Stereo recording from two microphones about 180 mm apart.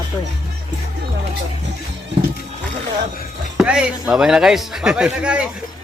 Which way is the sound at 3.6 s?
5° right (ahead or behind).